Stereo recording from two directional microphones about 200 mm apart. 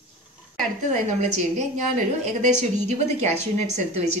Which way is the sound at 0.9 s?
35° right (ahead or behind).